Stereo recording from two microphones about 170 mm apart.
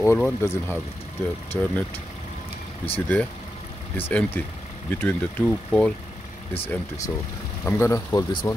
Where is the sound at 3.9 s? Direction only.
10° left (ahead or behind).